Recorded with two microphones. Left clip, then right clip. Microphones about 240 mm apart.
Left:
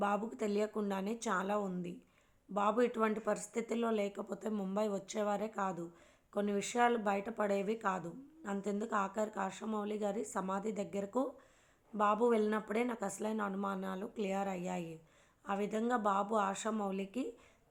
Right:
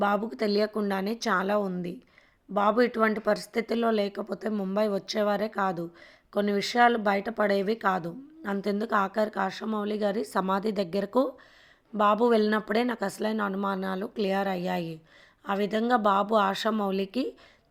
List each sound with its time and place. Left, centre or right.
0.0 s speech: right